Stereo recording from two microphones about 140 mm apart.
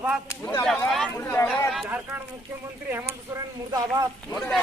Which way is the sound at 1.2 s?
20° left (ahead or behind).